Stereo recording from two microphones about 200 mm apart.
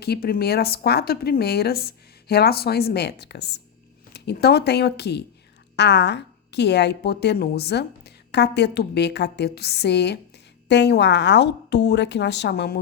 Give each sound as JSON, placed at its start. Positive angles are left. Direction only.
{"t": 0.0, "sound": "a woman's voice", "side_deg": 50}